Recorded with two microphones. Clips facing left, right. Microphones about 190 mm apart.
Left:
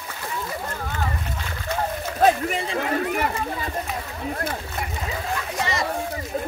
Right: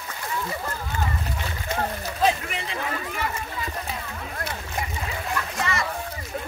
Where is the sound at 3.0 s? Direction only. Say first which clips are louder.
Left 6 dB; 55° left (ahead or behind).